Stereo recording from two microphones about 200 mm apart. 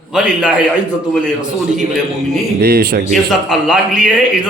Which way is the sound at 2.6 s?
50° right (ahead or behind).